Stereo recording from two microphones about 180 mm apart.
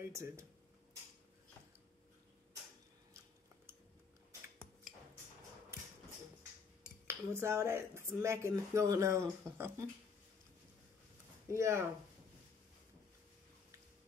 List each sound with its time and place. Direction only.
0.1 s speech: 15° right (ahead or behind)
6.8 s speech: 15° right (ahead or behind)
11.5 s speech: 15° right (ahead or behind)